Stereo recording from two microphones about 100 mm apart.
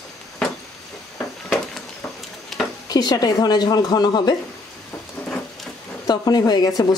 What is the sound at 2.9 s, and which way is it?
A woman's voice, 45° left (ahead or behind).